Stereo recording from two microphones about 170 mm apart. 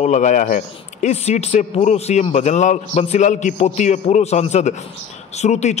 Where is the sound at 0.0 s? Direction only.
45° left (ahead or behind).